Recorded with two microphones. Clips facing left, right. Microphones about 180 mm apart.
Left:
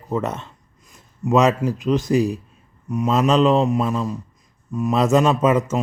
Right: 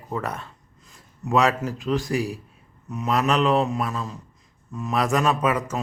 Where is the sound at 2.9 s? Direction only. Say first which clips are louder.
Left 5 dB; 15° left (ahead or behind).